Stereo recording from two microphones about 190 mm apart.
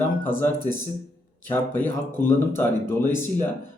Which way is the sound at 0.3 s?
10° left (ahead or behind).